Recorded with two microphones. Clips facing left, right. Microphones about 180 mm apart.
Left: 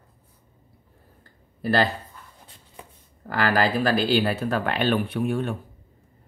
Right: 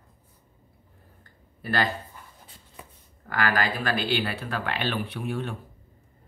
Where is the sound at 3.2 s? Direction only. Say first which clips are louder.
Left 4 dB; 35° left (ahead or behind).